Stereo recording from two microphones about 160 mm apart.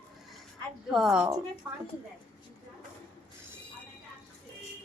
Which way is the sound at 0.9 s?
5° right (ahead or behind).